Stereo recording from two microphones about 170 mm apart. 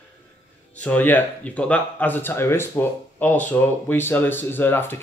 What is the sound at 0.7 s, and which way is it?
Speech, 10° left (ahead or behind).